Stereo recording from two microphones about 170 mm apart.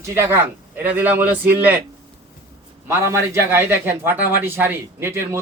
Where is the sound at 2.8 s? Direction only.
15° right (ahead or behind).